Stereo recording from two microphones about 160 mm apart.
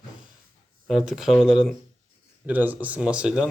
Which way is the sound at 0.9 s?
Centre (ahead or behind).